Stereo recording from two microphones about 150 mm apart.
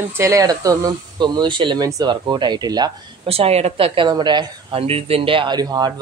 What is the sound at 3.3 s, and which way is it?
Speech, 40° right (ahead or behind).